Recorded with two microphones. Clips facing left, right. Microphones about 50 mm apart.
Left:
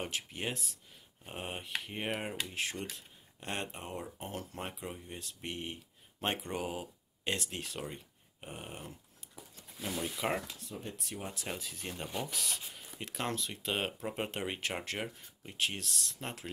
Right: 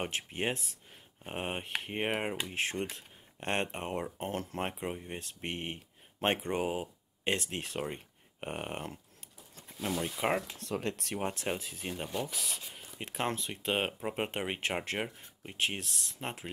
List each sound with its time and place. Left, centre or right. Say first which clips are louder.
0.0 s speech: right 4 dB; right
8.4 s a sound: right 7 dB; right
10.1 s speech: right 3 dB; right
10.6 s speech: right 8 dB; right
11.1 s speech: right 6 dB; right
11.5 s speech: right 4 dB; right